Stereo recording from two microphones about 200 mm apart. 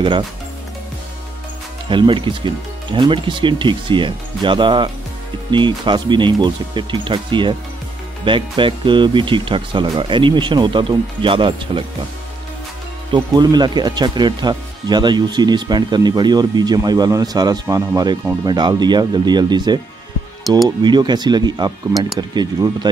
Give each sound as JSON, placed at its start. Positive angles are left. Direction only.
{"t": 1.9, "sound": "speech", "side_deg": -25}
{"t": 13.1, "sound": "speech", "side_deg": -20}
{"t": 20.4, "sound": "speech", "side_deg": 0}
{"t": 20.8, "sound": "speech", "side_deg": -20}